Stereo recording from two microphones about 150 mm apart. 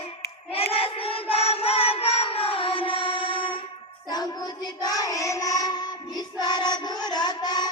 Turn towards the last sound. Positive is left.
turn(degrees=30)  # may be behind; listen again after turning